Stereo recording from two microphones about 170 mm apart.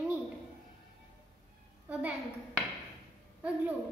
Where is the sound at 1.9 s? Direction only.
10° right (ahead or behind).